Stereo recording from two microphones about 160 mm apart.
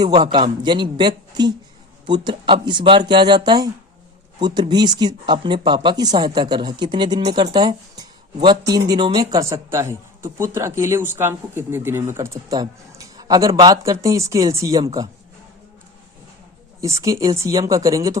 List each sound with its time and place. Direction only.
0.3 s speech: 30° right (ahead or behind)
17.0 s speech: 20° right (ahead or behind)